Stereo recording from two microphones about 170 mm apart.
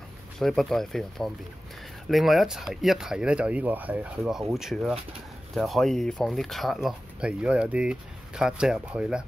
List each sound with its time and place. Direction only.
0.4 s speech: centre (ahead or behind)